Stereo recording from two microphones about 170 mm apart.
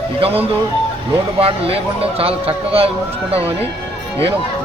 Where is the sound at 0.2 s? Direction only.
35° right (ahead or behind).